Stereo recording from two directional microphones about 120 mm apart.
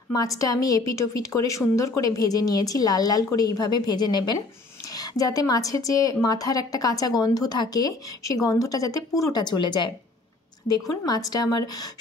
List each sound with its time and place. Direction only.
0.1 s a woman's voice: 30° left (ahead or behind)